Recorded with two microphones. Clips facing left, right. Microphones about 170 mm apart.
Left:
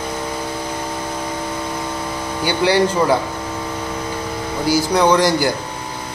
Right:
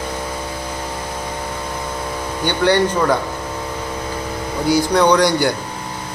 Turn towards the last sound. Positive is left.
turn(degrees=5)  # may be behind; listen again after turning